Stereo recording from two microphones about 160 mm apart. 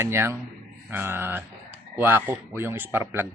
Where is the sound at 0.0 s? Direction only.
15° right (ahead or behind).